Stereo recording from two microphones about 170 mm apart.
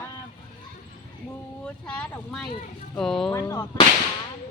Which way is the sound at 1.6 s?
5° left (ahead or behind).